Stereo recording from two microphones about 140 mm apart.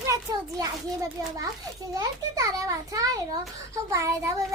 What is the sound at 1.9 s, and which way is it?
A child's voice, 25° right (ahead or behind).